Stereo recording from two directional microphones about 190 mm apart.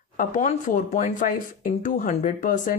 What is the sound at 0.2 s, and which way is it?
Speech, 40° left (ahead or behind).